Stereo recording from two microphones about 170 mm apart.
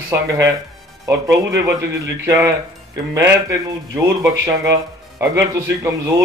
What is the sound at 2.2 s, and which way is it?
A man's voice, 20° right (ahead or behind).